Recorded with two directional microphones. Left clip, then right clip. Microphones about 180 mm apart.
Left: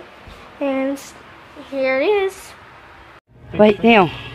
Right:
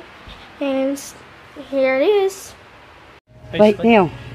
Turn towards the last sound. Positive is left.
turn(degrees=5)  # may be behind; listen again after turning